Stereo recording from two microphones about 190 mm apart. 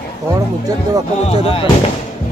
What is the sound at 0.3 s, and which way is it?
Speech, 20° right (ahead or behind).